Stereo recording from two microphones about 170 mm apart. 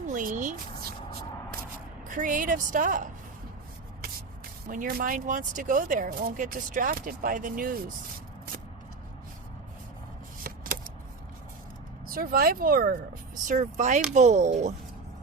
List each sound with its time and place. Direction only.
0.1 s speech: 50° right (ahead or behind)
2.0 s speech: 50° right (ahead or behind)
4.7 s speech: 55° right (ahead or behind)
10.4 s shuffling cards: 55° right (ahead or behind)
12.0 s speech: 60° right (ahead or behind)